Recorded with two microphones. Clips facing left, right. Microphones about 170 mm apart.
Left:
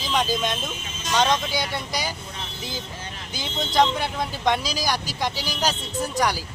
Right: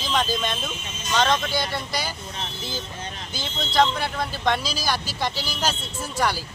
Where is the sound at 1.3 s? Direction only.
15° left (ahead or behind).